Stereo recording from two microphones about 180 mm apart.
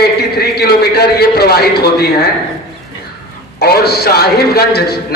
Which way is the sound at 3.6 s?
60° left (ahead or behind).